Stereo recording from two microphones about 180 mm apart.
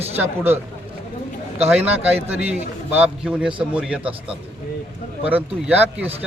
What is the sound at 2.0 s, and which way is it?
A man's voice, 10° right (ahead or behind).